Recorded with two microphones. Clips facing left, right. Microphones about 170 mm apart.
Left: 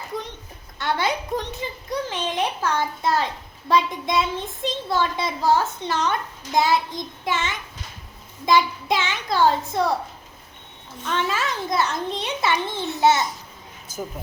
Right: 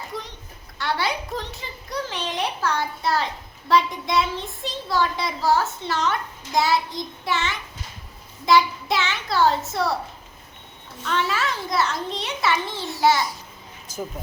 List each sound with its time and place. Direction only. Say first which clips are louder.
0.8 s a child's voice: left 2 dB; 20° left (ahead or behind)
11.0 s speech: even; 20° left (ahead or behind)